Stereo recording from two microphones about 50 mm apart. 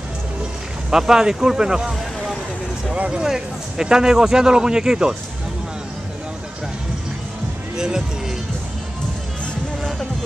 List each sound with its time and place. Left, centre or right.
0.8 s speech: centre
2.9 s a sound: right
3.2 s speech: centre
7.7 s speech: centre